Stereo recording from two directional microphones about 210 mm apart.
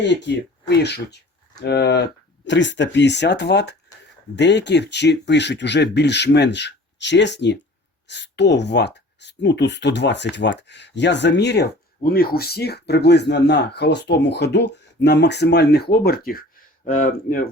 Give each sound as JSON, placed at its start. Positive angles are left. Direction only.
{"t": 0.0, "sound": "speech", "side_deg": 55}